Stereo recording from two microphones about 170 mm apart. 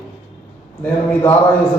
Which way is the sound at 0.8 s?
10° left (ahead or behind).